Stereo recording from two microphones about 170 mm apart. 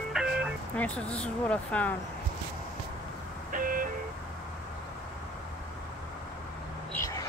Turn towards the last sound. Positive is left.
turn(degrees=20)  # may be behind; listen again after turning